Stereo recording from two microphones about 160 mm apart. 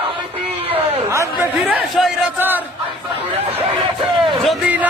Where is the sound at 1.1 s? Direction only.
20° right (ahead or behind).